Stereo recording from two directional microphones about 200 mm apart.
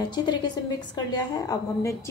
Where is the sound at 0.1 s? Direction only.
20° left (ahead or behind).